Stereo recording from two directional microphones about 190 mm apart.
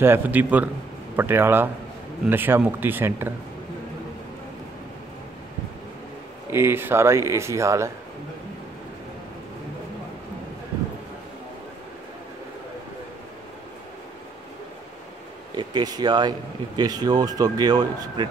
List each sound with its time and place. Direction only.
0.0 s speech: 10° right (ahead or behind)
6.5 s speech: 10° right (ahead or behind)
15.5 s speech: 20° right (ahead or behind)